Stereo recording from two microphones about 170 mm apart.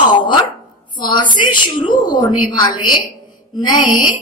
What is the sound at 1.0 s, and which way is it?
A woman's voice, 25° left (ahead or behind).